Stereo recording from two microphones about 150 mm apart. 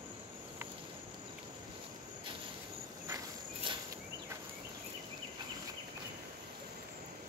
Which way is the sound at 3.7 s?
35° right (ahead or behind).